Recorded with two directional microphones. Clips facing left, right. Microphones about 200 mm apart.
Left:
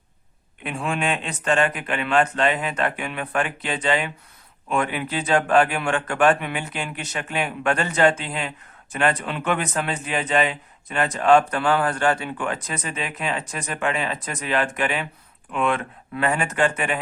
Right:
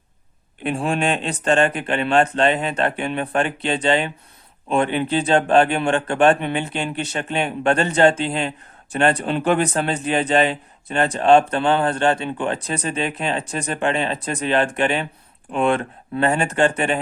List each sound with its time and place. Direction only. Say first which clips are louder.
0.6 s speech: right 5 dB; 30° right (ahead or behind)